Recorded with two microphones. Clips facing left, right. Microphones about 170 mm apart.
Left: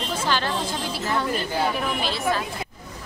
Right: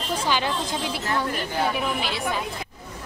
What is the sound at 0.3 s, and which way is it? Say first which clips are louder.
A woman's voice: even; 15° right (ahead or behind).